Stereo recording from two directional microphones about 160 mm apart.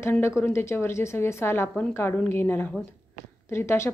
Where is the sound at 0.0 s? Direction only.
15° left (ahead or behind).